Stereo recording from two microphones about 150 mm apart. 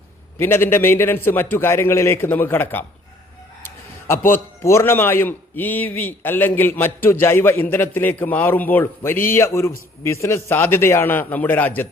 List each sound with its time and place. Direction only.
0.3 s a man's voice: 15° left (ahead or behind)
3.6 s chicken: 15° left (ahead or behind)
4.3 s a man's voice: 15° left (ahead or behind)